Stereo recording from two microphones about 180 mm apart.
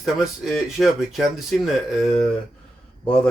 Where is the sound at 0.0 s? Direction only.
Centre (ahead or behind).